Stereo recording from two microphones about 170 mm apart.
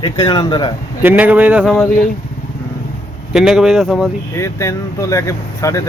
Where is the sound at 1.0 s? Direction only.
10° right (ahead or behind).